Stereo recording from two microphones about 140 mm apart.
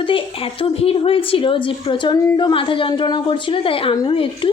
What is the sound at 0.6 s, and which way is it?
A woman's voice, 45° left (ahead or behind).